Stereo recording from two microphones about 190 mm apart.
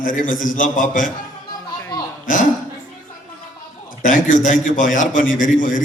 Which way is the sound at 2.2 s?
45° left (ahead or behind).